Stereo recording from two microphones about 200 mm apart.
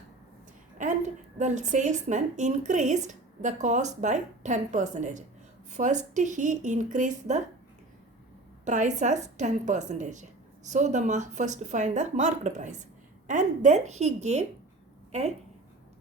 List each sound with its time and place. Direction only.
0.8 s a woman's voice: 35° right (ahead or behind)
8.6 s a woman's voice: 35° right (ahead or behind)